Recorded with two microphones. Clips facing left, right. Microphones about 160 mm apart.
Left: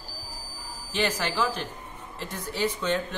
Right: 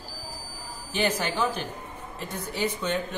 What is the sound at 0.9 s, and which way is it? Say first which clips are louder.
Speech: right 1 dB; 10° right (ahead or behind).